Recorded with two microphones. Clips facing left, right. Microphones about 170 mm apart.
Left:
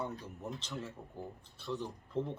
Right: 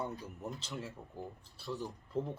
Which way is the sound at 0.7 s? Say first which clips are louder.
Even; centre (ahead or behind).